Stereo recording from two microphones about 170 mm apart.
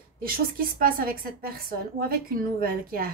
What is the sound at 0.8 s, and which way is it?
A woman's voice, 60° right (ahead or behind).